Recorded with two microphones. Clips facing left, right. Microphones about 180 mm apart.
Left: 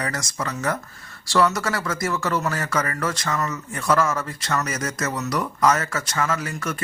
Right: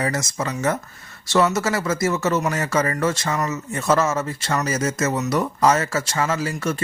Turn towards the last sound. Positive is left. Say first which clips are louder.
# right 3 dB
turn(degrees=-30)  # may be behind; listen again after turning